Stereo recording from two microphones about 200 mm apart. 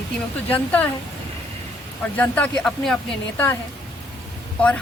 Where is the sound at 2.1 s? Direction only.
5° left (ahead or behind).